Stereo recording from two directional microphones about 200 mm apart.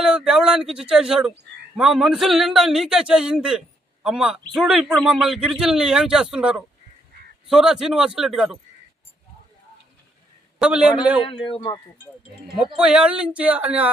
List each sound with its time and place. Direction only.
0.0 s a man's voice: 5° right (ahead or behind)
10.6 s a man's voice: 5° right (ahead or behind)
11.2 s a man's voice: 25° left (ahead or behind)
12.7 s speech: 5° right (ahead or behind)